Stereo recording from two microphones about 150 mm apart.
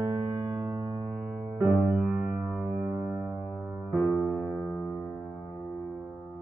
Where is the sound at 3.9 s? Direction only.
10° left (ahead or behind).